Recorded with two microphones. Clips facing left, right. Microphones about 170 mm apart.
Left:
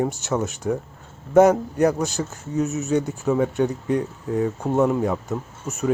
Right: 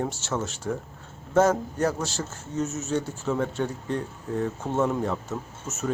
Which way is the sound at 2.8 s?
15° left (ahead or behind).